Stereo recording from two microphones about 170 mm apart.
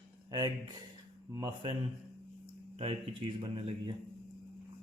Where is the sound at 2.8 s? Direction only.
30° right (ahead or behind).